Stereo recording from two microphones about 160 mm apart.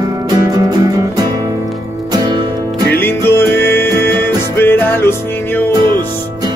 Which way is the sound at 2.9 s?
15° left (ahead or behind).